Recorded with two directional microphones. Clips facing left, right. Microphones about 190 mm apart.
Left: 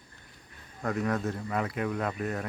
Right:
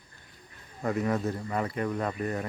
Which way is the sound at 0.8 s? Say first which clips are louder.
Right 2 dB; centre (ahead or behind).